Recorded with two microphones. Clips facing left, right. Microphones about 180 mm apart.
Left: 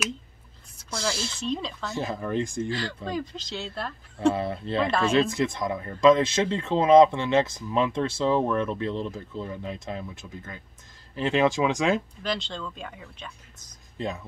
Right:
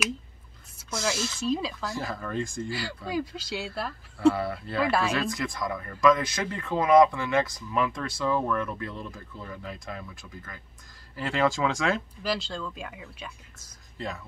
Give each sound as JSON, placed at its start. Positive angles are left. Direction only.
{"t": 1.1, "sound": "speech", "side_deg": 30}
{"t": 1.4, "sound": "speech", "side_deg": -5}
{"t": 2.0, "sound": "speech", "side_deg": 20}
{"t": 2.7, "sound": "speech", "side_deg": -10}
{"t": 4.3, "sound": "speech", "side_deg": 25}
{"t": 12.2, "sound": "speech", "side_deg": -5}
{"t": 13.9, "sound": "speech", "side_deg": 20}